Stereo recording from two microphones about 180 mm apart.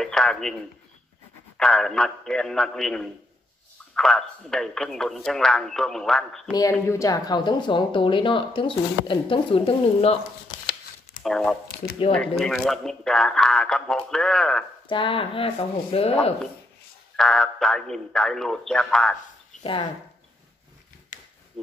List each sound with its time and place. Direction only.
0.0 s speech: 5° left (ahead or behind)
1.6 s speech: centre (ahead or behind)
6.5 s speech: 15° left (ahead or behind); by 10.1 s 35° left (ahead or behind)
11.2 s speech: centre (ahead or behind)
14.9 s speech: 30° left (ahead or behind)
17.2 s speech: 5° left (ahead or behind)
19.6 s speech: 30° left (ahead or behind)
21.1 s a sound: 45° left (ahead or behind)